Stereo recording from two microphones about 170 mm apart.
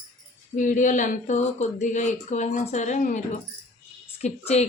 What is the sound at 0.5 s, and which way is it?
A woman's voice, 50° left (ahead or behind).